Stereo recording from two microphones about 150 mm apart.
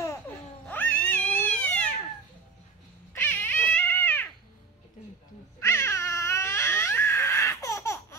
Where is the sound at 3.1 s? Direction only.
15° left (ahead or behind).